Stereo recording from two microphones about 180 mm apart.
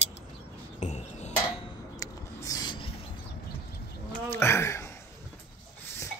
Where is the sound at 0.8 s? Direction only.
40° left (ahead or behind).